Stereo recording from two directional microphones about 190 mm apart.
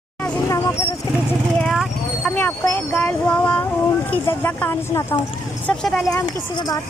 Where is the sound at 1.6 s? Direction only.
5° left (ahead or behind).